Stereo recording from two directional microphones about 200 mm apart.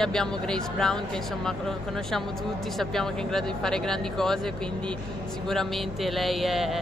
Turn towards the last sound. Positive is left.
turn(degrees=0)  # may be behind; listen again after turning